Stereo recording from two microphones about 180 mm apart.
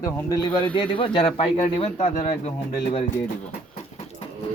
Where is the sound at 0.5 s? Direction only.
30° left (ahead or behind).